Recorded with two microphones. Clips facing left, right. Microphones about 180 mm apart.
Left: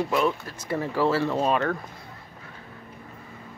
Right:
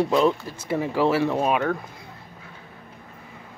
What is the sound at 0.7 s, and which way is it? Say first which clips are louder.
Speech: right 2 dB; 15° right (ahead or behind).